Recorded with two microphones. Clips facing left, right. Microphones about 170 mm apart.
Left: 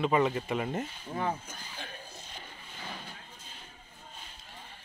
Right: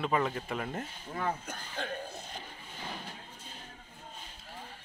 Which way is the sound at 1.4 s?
65° right (ahead or behind).